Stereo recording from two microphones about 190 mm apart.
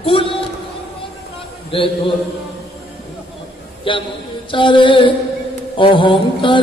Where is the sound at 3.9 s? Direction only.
25° left (ahead or behind).